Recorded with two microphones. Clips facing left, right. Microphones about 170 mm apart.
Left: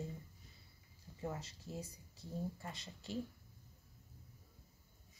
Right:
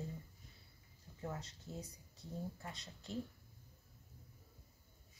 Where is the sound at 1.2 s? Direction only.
5° left (ahead or behind).